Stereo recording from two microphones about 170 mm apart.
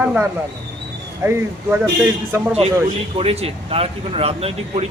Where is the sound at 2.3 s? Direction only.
10° right (ahead or behind).